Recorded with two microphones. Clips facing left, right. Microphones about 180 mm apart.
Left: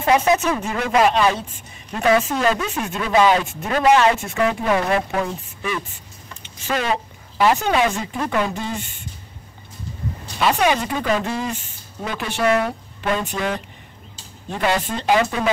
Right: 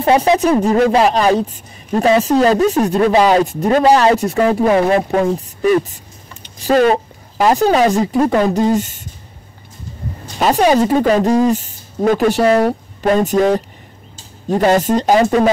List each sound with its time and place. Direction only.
0.0 s a woman's voice: 35° right (ahead or behind)
10.4 s a woman's voice: 40° right (ahead or behind)